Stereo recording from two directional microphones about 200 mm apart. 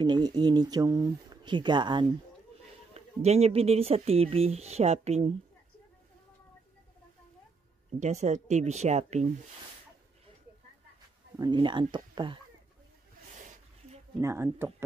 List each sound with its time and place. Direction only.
0.0 s speech: 20° right (ahead or behind)
8.0 s speech: 35° right (ahead or behind)
11.3 s speech: 20° right (ahead or behind)
13.4 s a sound: 35° right (ahead or behind)
14.2 s speech: 10° right (ahead or behind)